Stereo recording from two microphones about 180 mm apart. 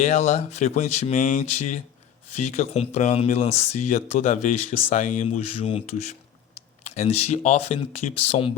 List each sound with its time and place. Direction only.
0.0 s speech: 40° left (ahead or behind)